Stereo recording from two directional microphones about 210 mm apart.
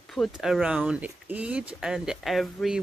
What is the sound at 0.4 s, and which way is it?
Speech, centre (ahead or behind).